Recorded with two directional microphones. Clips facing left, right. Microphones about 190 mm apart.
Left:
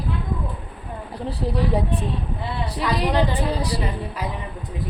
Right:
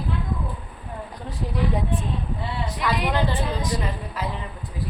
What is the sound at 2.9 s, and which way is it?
Speech, 35° left (ahead or behind).